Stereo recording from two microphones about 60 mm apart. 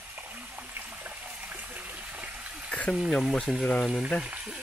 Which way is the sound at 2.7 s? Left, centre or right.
Left.